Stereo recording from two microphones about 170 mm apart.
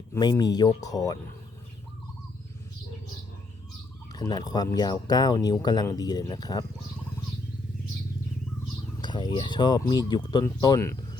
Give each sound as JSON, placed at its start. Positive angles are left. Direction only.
{"t": 0.1, "sound": "speech", "side_deg": 25}
{"t": 4.1, "sound": "speech", "side_deg": 25}
{"t": 9.0, "sound": "speech", "side_deg": 25}